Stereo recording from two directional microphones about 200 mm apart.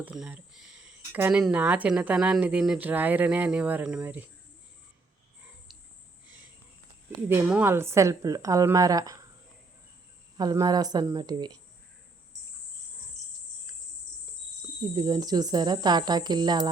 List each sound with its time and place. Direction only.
0.0 s speech: 5° right (ahead or behind)
5.7 s a sound: centre (ahead or behind)
7.3 s speech: 10° right (ahead or behind)
10.3 s speech: 20° right (ahead or behind)
14.9 s speech: 20° right (ahead or behind)